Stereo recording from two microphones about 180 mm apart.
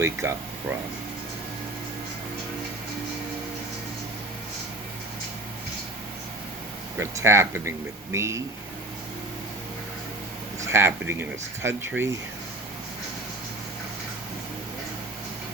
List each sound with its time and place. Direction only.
0.0 s speech: 15° right (ahead or behind)
7.0 s speech: 15° right (ahead or behind)
10.6 s speech: 15° right (ahead or behind)